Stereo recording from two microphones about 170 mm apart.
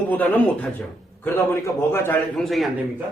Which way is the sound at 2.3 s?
Centre (ahead or behind).